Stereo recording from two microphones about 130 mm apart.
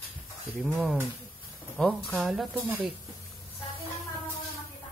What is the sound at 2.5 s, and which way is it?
Speech, 15° right (ahead or behind).